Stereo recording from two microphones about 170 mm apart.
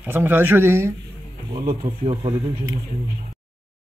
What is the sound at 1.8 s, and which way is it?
Speech, 30° right (ahead or behind).